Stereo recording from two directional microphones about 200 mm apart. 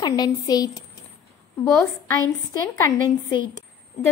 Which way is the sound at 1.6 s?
Centre (ahead or behind).